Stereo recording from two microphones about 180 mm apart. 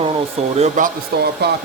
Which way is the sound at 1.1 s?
60° right (ahead or behind).